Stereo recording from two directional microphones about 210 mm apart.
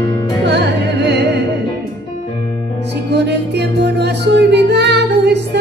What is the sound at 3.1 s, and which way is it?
Music, 55° right (ahead or behind).